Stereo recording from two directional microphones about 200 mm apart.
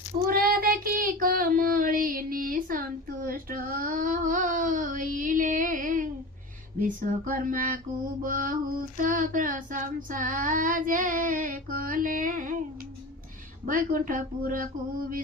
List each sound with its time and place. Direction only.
0.3 s child singing: 45° right (ahead or behind)
13.7 s child singing: 45° right (ahead or behind)